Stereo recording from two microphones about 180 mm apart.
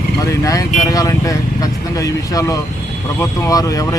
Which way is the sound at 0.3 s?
20° left (ahead or behind).